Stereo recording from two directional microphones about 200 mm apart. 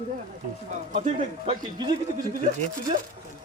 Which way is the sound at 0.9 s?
35° right (ahead or behind).